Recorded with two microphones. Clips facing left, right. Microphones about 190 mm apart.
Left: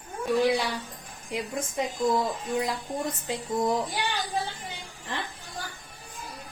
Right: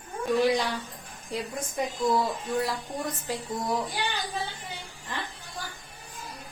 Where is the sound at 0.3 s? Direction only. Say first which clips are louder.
Even; 10° left (ahead or behind).